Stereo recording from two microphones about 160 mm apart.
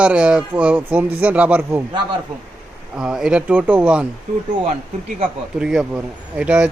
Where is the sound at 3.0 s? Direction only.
5° right (ahead or behind).